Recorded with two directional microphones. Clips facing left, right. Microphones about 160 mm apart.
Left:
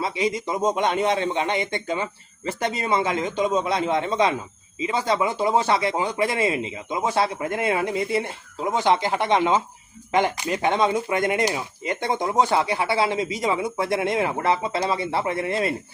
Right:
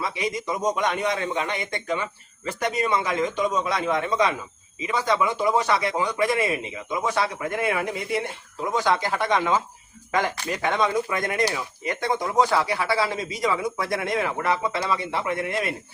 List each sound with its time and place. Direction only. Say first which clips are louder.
0.0 s speech: left 3 dB; 25° left (ahead or behind)